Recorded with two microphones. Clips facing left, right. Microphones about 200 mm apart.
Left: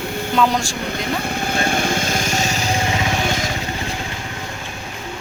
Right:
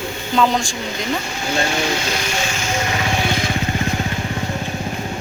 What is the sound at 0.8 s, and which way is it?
Vehicle, 55° left (ahead or behind).